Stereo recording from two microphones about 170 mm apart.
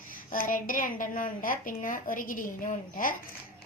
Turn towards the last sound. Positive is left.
turn(degrees=50)  # may be behind; listen again after turning